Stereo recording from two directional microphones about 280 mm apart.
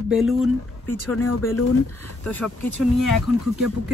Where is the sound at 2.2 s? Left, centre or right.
Centre.